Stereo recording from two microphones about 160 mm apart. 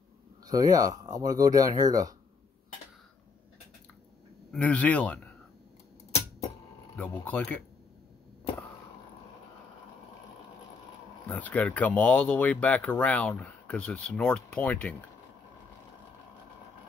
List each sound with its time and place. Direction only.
0.5 s speech: 20° right (ahead or behind)
4.5 s speech: 5° left (ahead or behind)
7.0 s speech: 10° left (ahead or behind)
11.2 s speech: 10° left (ahead or behind)